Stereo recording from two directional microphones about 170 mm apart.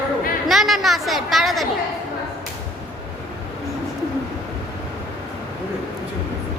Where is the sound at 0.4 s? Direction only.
Centre (ahead or behind).